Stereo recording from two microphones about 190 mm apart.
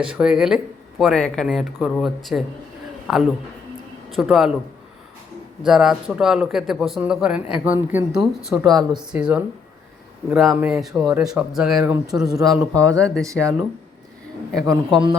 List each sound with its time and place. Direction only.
0.0 s speech: 5° right (ahead or behind)
5.6 s speech: centre (ahead or behind)
11.8 s speech: 15° right (ahead or behind)
12.1 s speech: 5° right (ahead or behind)
12.4 s a man's voice: 20° right (ahead or behind)